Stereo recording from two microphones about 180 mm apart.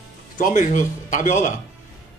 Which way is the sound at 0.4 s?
45° left (ahead or behind).